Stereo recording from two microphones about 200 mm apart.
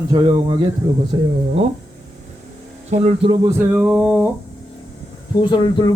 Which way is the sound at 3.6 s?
5° right (ahead or behind).